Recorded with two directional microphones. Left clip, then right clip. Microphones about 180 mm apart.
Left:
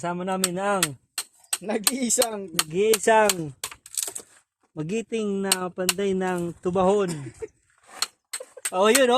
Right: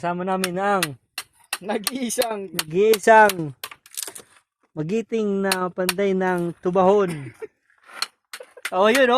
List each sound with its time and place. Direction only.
0.0 s speech: 45° right (ahead or behind)
1.6 s speech: 25° right (ahead or behind)
2.6 s speech: 55° right (ahead or behind)
3.6 s typing: 25° right (ahead or behind)
4.7 s speech: 50° right (ahead or behind); by 7.1 s 35° right (ahead or behind)
7.4 s a sound: 35° right (ahead or behind)
8.6 s speech: 40° right (ahead or behind)